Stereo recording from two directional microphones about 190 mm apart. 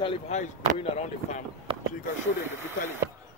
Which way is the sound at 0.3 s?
35° left (ahead or behind).